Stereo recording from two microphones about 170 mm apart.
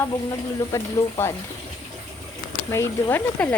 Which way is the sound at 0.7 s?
20° left (ahead or behind).